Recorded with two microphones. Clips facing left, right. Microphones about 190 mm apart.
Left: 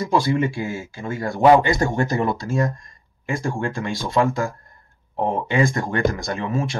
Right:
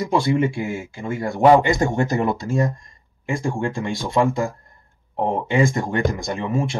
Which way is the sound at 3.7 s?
25° right (ahead or behind).